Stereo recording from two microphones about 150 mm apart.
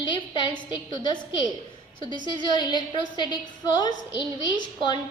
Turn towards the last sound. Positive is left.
turn(degrees=30)  # may be behind; listen again after turning